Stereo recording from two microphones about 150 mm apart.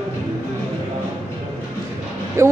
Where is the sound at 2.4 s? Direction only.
20° right (ahead or behind).